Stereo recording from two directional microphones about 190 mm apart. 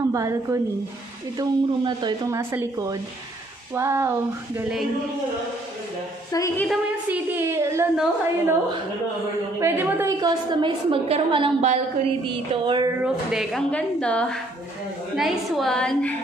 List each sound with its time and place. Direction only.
0.1 s a woman's voice: 15° right (ahead or behind)
6.3 s a woman's voice: 15° left (ahead or behind)
6.7 s a woman's voice: 10° right (ahead or behind)
7.9 s a woman's voice: 5° right (ahead or behind)
9.6 s a woman's voice: 10° right (ahead or behind)
13.0 s a woman's voice: centre (ahead or behind)